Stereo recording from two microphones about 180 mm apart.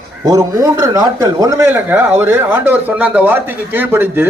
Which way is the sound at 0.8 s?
20° right (ahead or behind).